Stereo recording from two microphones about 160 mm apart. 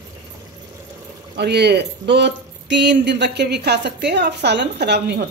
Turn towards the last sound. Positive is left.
turn(degrees=-90)